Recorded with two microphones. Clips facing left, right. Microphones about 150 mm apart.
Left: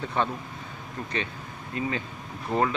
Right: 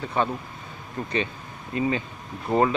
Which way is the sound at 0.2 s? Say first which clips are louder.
Right 2 dB; 5° right (ahead or behind).